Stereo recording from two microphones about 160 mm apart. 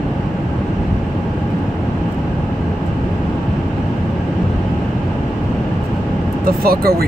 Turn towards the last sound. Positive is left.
turn(degrees=-70)  # may be behind; listen again after turning